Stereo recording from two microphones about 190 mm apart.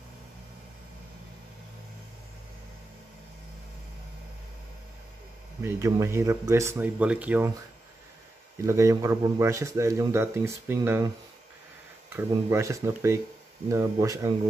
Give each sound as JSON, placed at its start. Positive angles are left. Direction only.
{"t": 5.6, "sound": "speech", "side_deg": -15}
{"t": 8.5, "sound": "speech", "side_deg": -15}
{"t": 12.1, "sound": "speech", "side_deg": -15}